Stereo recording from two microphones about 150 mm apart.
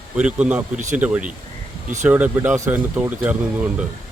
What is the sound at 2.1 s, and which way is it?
Speech, 10° right (ahead or behind).